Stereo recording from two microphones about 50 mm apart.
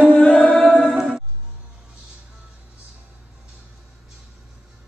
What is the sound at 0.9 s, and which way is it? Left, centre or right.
Music, centre.